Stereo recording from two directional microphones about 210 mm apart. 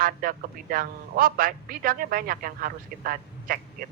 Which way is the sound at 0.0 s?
40° right (ahead or behind).